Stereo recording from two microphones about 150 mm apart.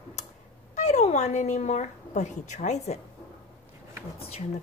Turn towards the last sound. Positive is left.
turn(degrees=40)  # may be behind; listen again after turning